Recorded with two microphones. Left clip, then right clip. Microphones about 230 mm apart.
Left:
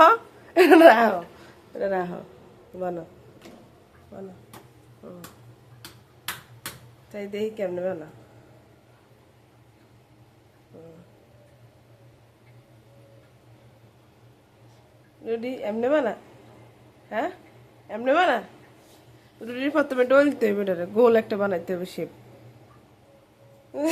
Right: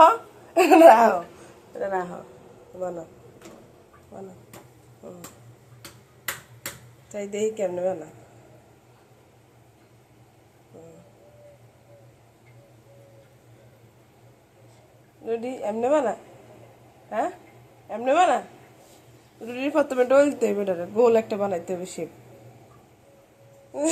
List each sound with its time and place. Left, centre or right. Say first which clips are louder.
0.0 s a sound: even; centre
1.8 s speech: left 1 dB; left
7.1 s speech: right 3 dB; centre
15.2 s speech: right 1 dB; centre
19.5 s speech: right 1 dB; centre